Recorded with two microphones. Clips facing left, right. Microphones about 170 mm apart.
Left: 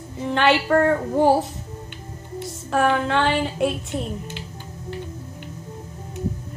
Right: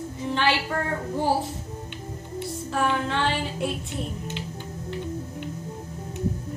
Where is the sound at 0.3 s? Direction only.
65° left (ahead or behind).